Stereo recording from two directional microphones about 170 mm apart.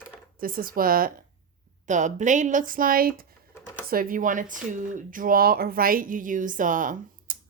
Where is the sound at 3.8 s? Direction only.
55° right (ahead or behind).